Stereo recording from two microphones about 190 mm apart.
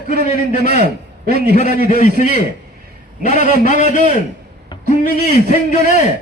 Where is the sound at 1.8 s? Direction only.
45° left (ahead or behind).